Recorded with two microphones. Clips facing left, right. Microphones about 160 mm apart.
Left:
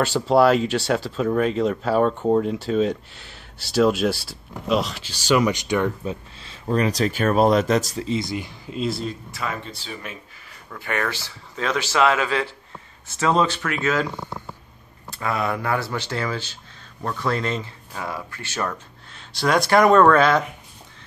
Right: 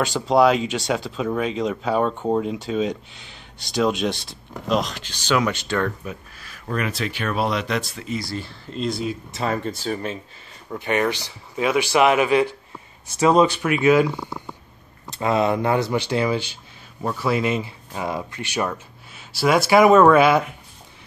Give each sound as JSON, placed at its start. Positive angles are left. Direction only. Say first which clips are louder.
{"t": 0.0, "sound": "speech", "louder": "even", "side_deg": 0}
{"t": 6.0, "sound": "speech", "louder": "left 4 dB", "side_deg": 25}
{"t": 8.2, "sound": "speech", "louder": "left 2 dB", "side_deg": 15}
{"t": 8.7, "sound": "speech", "louder": "even", "side_deg": 5}
{"t": 9.3, "sound": "speech", "louder": "right 6 dB", "side_deg": -35}
{"t": 10.7, "sound": "speech", "louder": "right 5 dB", "side_deg": -20}
{"t": 15.0, "sound": "speech", "louder": "right 5 dB", "side_deg": -25}